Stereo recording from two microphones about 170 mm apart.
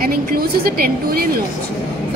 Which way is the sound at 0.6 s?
60° right (ahead or behind).